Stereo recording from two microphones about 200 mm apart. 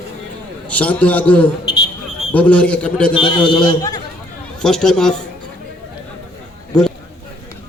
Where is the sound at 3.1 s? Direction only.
25° left (ahead or behind).